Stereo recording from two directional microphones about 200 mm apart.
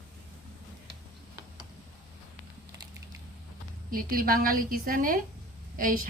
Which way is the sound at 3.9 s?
45° right (ahead or behind).